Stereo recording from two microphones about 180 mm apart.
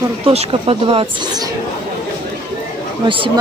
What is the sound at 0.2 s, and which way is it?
Speech, 35° right (ahead or behind).